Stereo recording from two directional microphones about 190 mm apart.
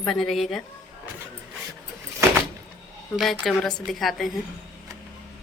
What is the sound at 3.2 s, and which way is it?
A woman's voice, centre (ahead or behind).